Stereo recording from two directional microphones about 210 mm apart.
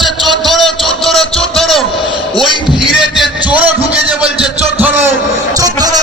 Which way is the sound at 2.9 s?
Centre (ahead or behind).